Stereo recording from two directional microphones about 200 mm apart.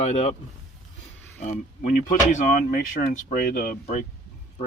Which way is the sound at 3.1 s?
45° left (ahead or behind).